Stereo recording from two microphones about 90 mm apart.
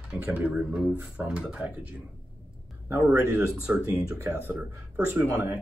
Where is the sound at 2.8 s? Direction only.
20° right (ahead or behind).